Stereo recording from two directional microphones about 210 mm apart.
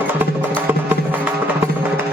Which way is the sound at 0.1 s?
10° right (ahead or behind).